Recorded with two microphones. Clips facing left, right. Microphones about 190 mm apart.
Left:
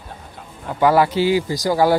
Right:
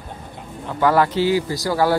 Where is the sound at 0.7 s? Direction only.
10° left (ahead or behind).